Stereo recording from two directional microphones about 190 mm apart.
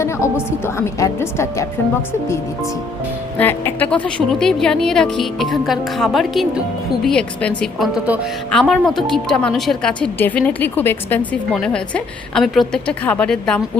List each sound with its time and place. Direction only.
0.0 s a woman's voice: 15° left (ahead or behind)
3.3 s speech: 10° left (ahead or behind)